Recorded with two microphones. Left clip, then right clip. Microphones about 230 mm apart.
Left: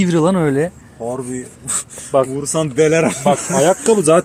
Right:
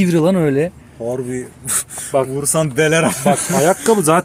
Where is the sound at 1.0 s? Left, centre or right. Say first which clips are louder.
Right 2 dB; right.